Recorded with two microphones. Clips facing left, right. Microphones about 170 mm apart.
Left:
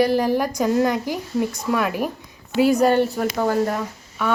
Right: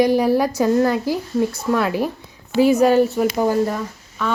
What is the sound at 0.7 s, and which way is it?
Speech, 15° left (ahead or behind).